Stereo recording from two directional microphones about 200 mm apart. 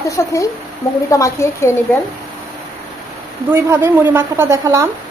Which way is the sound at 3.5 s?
10° right (ahead or behind).